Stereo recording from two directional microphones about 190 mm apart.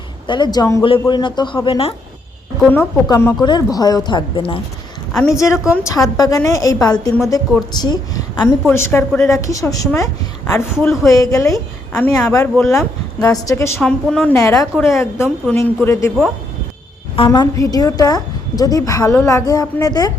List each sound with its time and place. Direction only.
0.3 s a woman's voice: 25° left (ahead or behind)
2.6 s a woman's voice: 10° left (ahead or behind); by 4.6 s 25° left (ahead or behind)
5.1 s a woman's voice: centre (ahead or behind)
5.4 s a woman's voice: 15° left (ahead or behind)
10.8 s a woman's voice: centre (ahead or behind)
11.1 s a woman's voice: 15° left (ahead or behind)
12.7 s a woman's voice: 20° left (ahead or behind)
13.8 s a woman's voice: 5° left (ahead or behind)
14.3 s a woman's voice: 15° left (ahead or behind)
17.2 s a woman's voice: 25° left (ahead or behind)